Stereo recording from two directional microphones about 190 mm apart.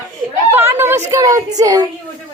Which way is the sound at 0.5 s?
10° right (ahead or behind).